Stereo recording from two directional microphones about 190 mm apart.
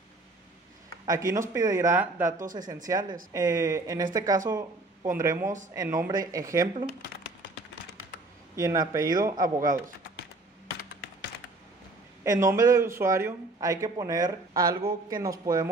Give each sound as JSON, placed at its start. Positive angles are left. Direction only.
{"t": 1.0, "sound": "a man's voice", "side_deg": -20}
{"t": 8.5, "sound": "speech", "side_deg": -15}
{"t": 12.2, "sound": "a man's voice", "side_deg": -15}